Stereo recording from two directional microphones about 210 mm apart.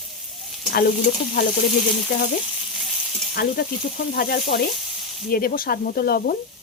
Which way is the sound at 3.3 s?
45° left (ahead or behind).